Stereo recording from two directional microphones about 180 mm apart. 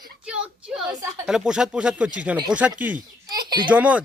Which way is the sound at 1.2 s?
5° right (ahead or behind).